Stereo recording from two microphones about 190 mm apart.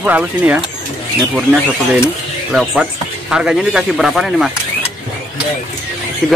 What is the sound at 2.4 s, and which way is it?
Speech, 5° right (ahead or behind).